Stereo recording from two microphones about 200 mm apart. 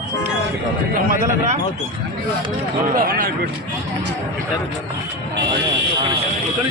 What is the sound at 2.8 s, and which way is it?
Speech, 45° right (ahead or behind).